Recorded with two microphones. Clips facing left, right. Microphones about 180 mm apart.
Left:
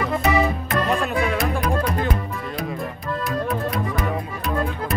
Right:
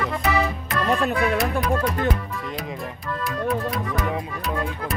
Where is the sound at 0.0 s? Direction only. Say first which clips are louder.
Left 3 dB; 20° left (ahead or behind).